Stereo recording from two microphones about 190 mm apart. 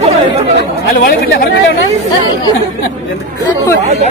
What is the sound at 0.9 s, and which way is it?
Speech, 50° left (ahead or behind).